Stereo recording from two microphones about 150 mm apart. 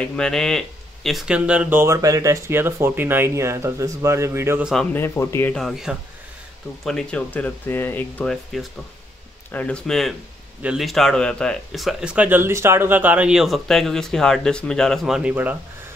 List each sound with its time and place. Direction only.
0.0 s speech: 5° left (ahead or behind); by 4.6 s 15° right (ahead or behind)
4.9 s speech: 15° left (ahead or behind)
5.6 s speech: centre (ahead or behind)